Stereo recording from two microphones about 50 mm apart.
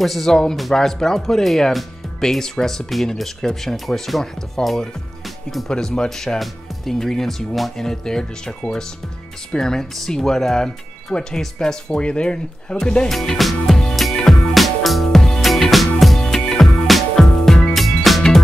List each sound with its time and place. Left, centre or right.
0.0 s speech: centre
13.1 s music: centre